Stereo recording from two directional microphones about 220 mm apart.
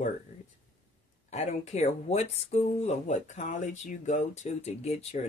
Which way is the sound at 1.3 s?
30° left (ahead or behind).